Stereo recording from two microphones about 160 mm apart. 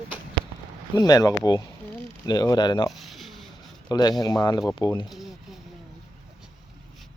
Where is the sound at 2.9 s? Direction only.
Centre (ahead or behind).